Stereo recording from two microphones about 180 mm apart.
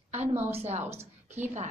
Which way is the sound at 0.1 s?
35° right (ahead or behind).